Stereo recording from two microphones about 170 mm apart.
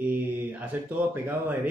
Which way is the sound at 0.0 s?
10° right (ahead or behind).